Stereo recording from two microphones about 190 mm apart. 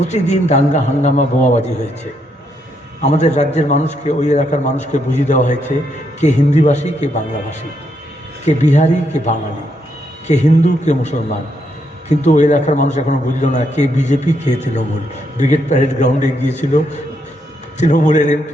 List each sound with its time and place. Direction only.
0.0 s a man's voice: 35° left (ahead or behind)
3.0 s a man's voice: 35° left (ahead or behind)
8.4 s a man's voice: 40° left (ahead or behind)